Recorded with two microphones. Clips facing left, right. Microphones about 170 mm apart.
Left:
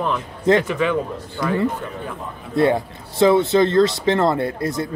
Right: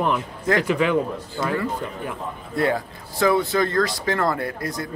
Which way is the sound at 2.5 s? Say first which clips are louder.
Left 5 dB; 25° left (ahead or behind).